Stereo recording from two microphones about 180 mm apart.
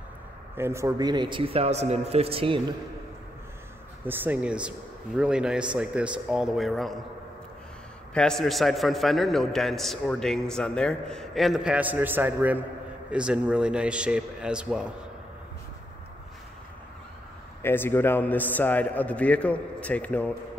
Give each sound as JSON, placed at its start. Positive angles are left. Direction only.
{"t": 0.6, "sound": "speech", "side_deg": -15}
{"t": 4.0, "sound": "a man's voice", "side_deg": -10}
{"t": 8.1, "sound": "a man's voice", "side_deg": 5}
{"t": 17.6, "sound": "a man's voice", "side_deg": 15}